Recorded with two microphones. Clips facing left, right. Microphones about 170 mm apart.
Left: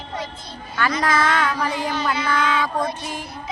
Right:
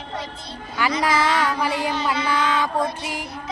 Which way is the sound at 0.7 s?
15° right (ahead or behind).